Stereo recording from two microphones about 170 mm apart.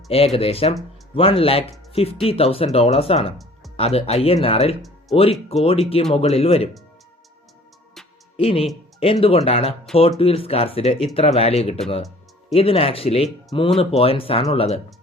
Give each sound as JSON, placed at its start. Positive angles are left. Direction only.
{"t": 0.1, "sound": "speech", "side_deg": 35}
{"t": 8.4, "sound": "speech", "side_deg": 35}